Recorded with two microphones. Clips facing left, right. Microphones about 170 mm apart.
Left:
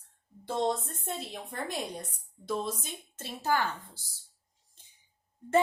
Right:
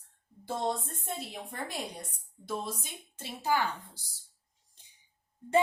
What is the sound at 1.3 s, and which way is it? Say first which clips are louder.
Speech: left 2 dB; 10° right (ahead or behind).